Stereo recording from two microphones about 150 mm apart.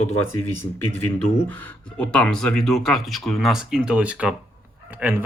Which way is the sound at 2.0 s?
5° left (ahead or behind).